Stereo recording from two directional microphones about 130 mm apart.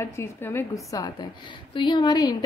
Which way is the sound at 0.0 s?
20° left (ahead or behind).